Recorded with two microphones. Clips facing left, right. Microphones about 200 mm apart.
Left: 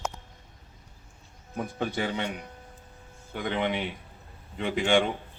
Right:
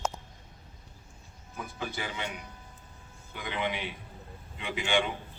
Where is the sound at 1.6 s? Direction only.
55° left (ahead or behind).